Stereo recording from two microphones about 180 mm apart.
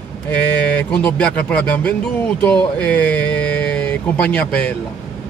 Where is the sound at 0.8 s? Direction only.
5° left (ahead or behind).